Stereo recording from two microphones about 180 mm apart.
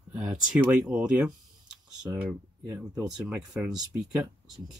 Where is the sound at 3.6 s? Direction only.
20° right (ahead or behind).